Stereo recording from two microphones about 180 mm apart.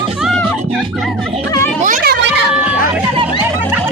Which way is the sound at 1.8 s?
55° right (ahead or behind).